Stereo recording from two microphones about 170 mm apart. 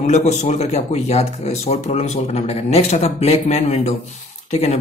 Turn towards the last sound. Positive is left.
turn(degrees=40)  # may be behind; listen again after turning